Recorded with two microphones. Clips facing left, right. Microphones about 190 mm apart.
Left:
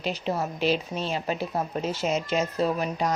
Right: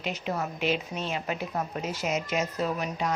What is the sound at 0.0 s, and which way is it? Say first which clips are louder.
A woman's voice: left 3 dB; 30° left (ahead or behind).